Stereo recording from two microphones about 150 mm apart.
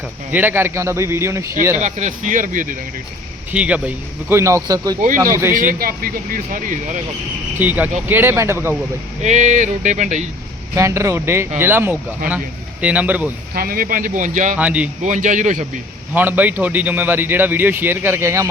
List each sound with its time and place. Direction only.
0.3 s a man's voice: 10° right (ahead or behind)
1.8 s speech: 55° right (ahead or behind)
3.5 s a man's voice: 10° right (ahead or behind)
5.5 s speech: 70° right (ahead or behind)
7.6 s a man's voice: 10° right (ahead or behind)
9.2 s speech: 55° right (ahead or behind)
10.8 s a man's voice: 20° right (ahead or behind)
13.5 s speech: 80° right; by 14.5 s 55° right (ahead or behind)
14.5 s a man's voice: 10° right (ahead or behind)
15.0 s speech: 55° right (ahead or behind)
16.1 s a man's voice: 10° right (ahead or behind)